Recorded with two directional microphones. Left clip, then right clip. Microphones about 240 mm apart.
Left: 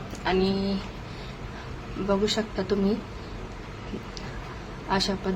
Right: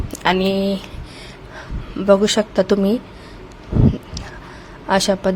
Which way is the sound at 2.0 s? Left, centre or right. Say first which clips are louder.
Right 12 dB; right.